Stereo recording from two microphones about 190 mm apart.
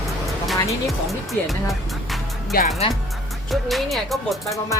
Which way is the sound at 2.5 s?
55° left (ahead or behind).